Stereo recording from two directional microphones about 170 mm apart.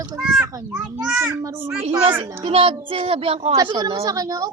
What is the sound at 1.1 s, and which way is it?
Speech, 15° right (ahead or behind).